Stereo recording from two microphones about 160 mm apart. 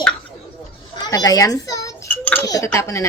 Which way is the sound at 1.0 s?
25° left (ahead or behind).